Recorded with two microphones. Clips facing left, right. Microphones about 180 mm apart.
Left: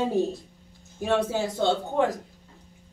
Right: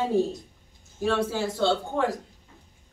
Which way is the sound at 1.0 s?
15° left (ahead or behind).